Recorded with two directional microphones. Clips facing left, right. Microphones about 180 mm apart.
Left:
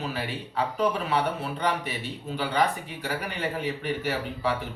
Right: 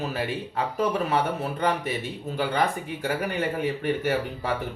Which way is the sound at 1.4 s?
45° right (ahead or behind).